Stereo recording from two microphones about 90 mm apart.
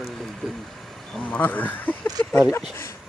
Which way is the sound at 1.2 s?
20° left (ahead or behind).